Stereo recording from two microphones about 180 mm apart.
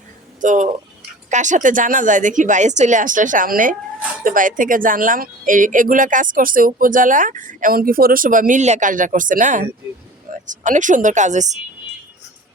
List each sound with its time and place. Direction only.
0.4 s a woman's voice: 45° right (ahead or behind)